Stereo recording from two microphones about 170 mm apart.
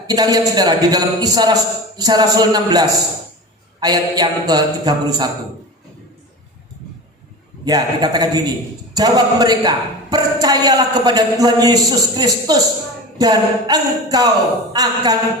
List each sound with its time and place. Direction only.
0.1 s speech: 20° right (ahead or behind)
7.6 s speech: 20° right (ahead or behind)